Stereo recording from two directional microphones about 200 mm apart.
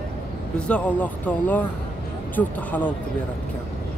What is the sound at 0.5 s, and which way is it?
Speech, 5° left (ahead or behind).